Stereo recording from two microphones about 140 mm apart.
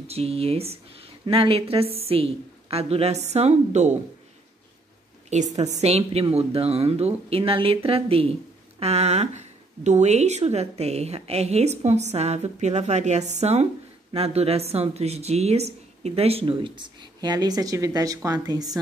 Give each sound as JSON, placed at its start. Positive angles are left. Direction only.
{"t": 0.1, "sound": "speech", "side_deg": -45}
{"t": 5.6, "sound": "speech", "side_deg": -50}